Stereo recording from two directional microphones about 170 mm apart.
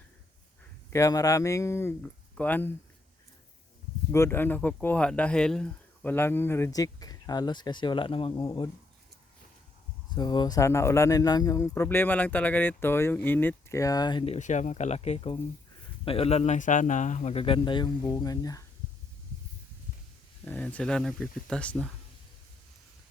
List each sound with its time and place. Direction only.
0.9 s speech: 20° left (ahead or behind)
4.1 s speech: 15° left (ahead or behind); by 8.4 s 30° left (ahead or behind)
10.2 s speech: 25° left (ahead or behind)
14.3 s a man's voice: 45° left (ahead or behind); by 18.6 s 20° left (ahead or behind)
20.4 s speech: 10° left (ahead or behind)